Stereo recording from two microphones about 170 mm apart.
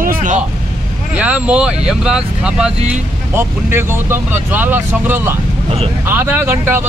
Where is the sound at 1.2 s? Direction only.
10° right (ahead or behind).